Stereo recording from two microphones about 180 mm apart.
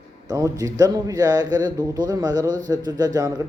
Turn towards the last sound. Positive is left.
turn(degrees=-20)  # may be behind; listen again after turning